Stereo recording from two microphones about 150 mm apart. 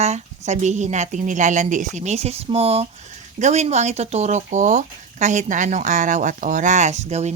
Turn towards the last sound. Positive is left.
turn(degrees=-50)  # may be behind; listen again after turning